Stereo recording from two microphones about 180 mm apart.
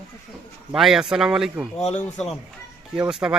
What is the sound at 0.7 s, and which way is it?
A man's voice, 5° right (ahead or behind).